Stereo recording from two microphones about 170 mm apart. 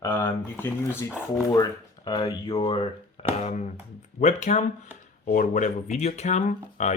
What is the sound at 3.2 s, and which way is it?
Music, 35° left (ahead or behind).